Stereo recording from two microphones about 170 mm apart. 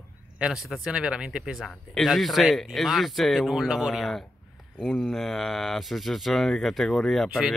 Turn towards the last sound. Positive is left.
turn(degrees=0)  # may be behind; listen again after turning